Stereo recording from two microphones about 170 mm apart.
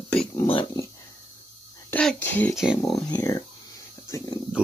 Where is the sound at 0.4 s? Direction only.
30° left (ahead or behind).